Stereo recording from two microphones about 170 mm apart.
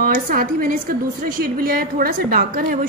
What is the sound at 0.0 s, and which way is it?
A woman's voice, 55° right (ahead or behind).